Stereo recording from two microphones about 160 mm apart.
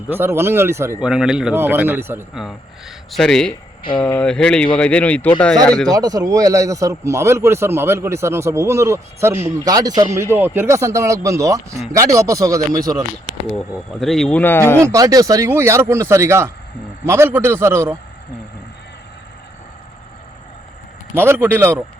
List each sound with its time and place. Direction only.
0.1 s a man's voice: 15° right (ahead or behind)
0.9 s a man's voice: 5° right (ahead or behind)
2.3 s speech: 5° right (ahead or behind)
5.9 s a man's voice: 25° right (ahead or behind)
10.3 s speech: 15° right (ahead or behind)
13.5 s speech: 5° left (ahead or behind)
14.8 s a man's voice: 20° right (ahead or behind)
21.2 s a man's voice: 15° right (ahead or behind)